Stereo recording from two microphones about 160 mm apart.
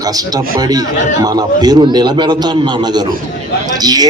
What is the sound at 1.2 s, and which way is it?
A man's voice, 25° right (ahead or behind).